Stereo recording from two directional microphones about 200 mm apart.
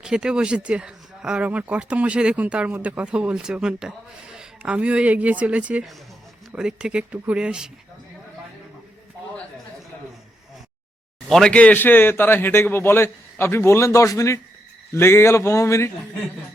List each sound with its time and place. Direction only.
0.0 s speech: 5° right (ahead or behind)
11.3 s a man's voice: 5° left (ahead or behind)